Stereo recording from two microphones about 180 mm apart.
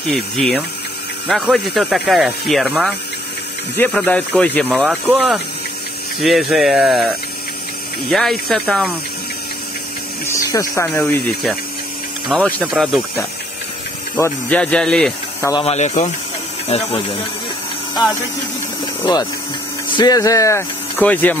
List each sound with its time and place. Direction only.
0.1 s speech: centre (ahead or behind)
6.2 s speech: centre (ahead or behind)
8.1 s speech: centre (ahead or behind)
10.2 s speech: 15° left (ahead or behind); by 13.0 s centre (ahead or behind)
14.1 s speech: 10° left (ahead or behind)
15.6 s speech: 35° left (ahead or behind)
20.0 s speech: 20° left (ahead or behind)